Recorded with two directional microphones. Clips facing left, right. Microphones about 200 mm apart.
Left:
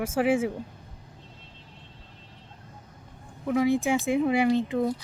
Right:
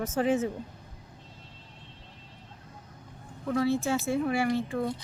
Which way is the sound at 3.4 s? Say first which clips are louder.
Left 3 dB; 15° left (ahead or behind).